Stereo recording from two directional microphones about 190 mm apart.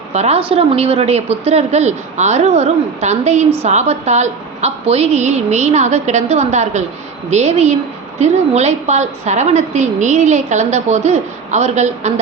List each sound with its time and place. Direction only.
0.1 s a woman's voice: 35° right (ahead or behind)